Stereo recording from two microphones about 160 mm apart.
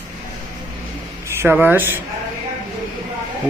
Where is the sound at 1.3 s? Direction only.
15° right (ahead or behind).